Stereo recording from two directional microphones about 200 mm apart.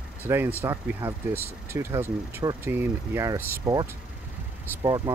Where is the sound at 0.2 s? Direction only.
10° right (ahead or behind).